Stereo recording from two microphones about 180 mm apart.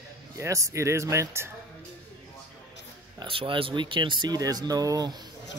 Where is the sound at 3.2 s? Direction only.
30° right (ahead or behind).